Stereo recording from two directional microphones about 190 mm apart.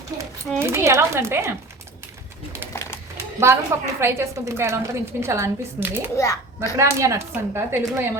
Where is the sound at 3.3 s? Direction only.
15° right (ahead or behind).